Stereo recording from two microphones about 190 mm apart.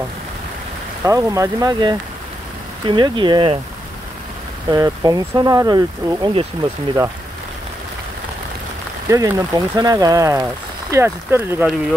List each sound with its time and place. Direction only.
1.0 s speech: 15° right (ahead or behind)
4.6 s speech: 20° right (ahead or behind)
9.1 s speech: 15° right (ahead or behind)